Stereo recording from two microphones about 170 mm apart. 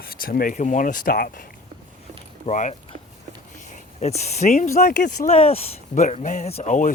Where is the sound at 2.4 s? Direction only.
45° left (ahead or behind).